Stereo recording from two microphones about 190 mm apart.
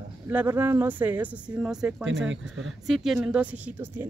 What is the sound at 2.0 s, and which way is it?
Speech, 75° right (ahead or behind).